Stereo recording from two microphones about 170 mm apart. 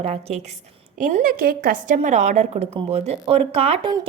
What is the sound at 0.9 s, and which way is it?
A woman's voice, 50° right (ahead or behind).